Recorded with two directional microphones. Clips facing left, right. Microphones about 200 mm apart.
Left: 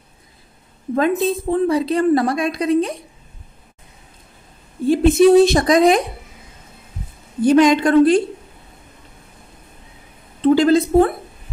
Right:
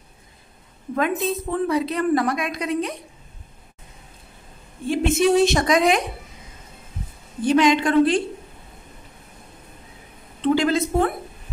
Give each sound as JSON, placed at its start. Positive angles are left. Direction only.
{"t": 1.2, "sound": "a woman's voice", "side_deg": 30}
{"t": 4.8, "sound": "a woman's voice", "side_deg": 35}
{"t": 7.4, "sound": "a woman's voice", "side_deg": 45}
{"t": 10.4, "sound": "a woman's voice", "side_deg": 35}